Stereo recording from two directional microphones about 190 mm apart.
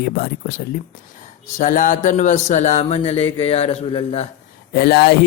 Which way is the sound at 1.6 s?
40° left (ahead or behind).